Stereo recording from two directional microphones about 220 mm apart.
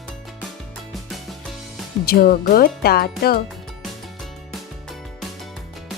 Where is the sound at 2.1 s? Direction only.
45° left (ahead or behind).